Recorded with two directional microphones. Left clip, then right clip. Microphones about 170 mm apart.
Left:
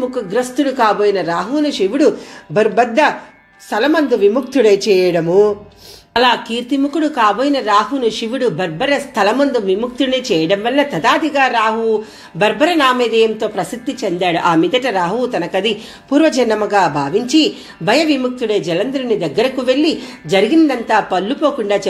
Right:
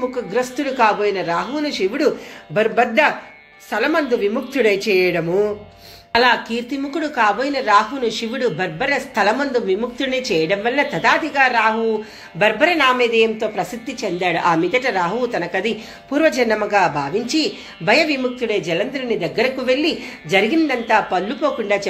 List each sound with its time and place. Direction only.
0.1 s a woman's voice: 20° left (ahead or behind)